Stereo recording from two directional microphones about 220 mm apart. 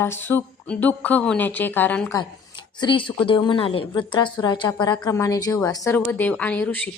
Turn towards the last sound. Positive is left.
turn(degrees=5)  # may be behind; listen again after turning